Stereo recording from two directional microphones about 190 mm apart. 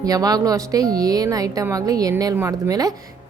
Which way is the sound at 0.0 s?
20° right (ahead or behind).